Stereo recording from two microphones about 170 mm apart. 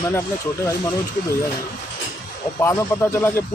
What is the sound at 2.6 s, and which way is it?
Speech, 15° left (ahead or behind).